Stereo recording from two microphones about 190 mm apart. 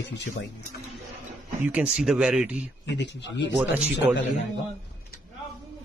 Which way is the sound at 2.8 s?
65° left (ahead or behind).